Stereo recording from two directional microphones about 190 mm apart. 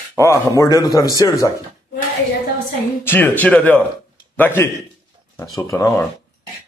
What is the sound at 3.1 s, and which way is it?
Speech, 10° left (ahead or behind).